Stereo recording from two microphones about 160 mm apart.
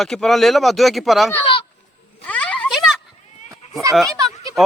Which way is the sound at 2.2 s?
10° left (ahead or behind).